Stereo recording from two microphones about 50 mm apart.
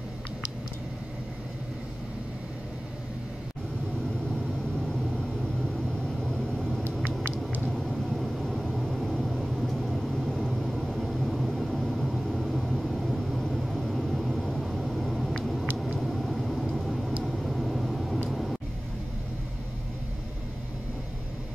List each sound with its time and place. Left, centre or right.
6.0 s vehicle: centre
7.1 s vehicle: right
7.7 s vehicle: centre
18.3 s music: centre